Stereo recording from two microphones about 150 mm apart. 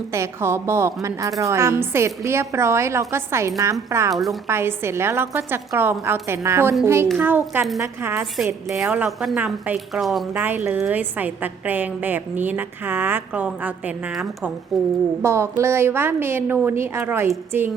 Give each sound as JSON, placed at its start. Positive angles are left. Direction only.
{"t": 0.1, "sound": "a woman's voice", "side_deg": -15}
{"t": 4.1, "sound": "a woman's voice", "side_deg": 0}
{"t": 4.4, "sound": "a woman's voice", "side_deg": -15}
{"t": 10.3, "sound": "a woman's voice", "side_deg": -10}
{"t": 15.2, "sound": "a woman's voice", "side_deg": -20}